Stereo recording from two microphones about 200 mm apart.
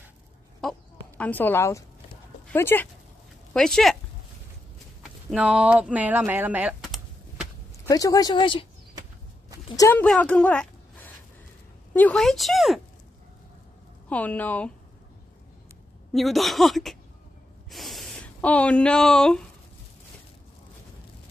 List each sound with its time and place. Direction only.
0.6 s a sound: 5° left (ahead or behind)
2.5 s a woman's voice: 10° left (ahead or behind)
5.3 s speech: 5° right (ahead or behind)
7.9 s speech: 20° left (ahead or behind)
9.8 s a woman's voice: 10° left (ahead or behind)
14.0 s a woman's voice: 10° left (ahead or behind)
16.1 s speech: centre (ahead or behind)
17.6 s a sound: centre (ahead or behind)